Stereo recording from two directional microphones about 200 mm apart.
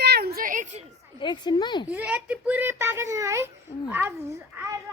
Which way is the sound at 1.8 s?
5° right (ahead or behind).